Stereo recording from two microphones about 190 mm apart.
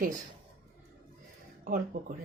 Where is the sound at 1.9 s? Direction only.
40° right (ahead or behind).